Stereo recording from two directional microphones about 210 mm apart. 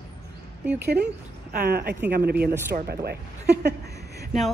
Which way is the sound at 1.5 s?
50° right (ahead or behind).